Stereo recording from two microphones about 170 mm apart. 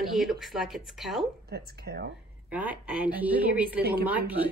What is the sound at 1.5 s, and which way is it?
Speech, 70° right (ahead or behind).